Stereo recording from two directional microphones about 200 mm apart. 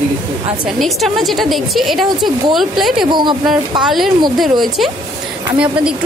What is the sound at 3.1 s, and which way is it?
Speech, 20° right (ahead or behind).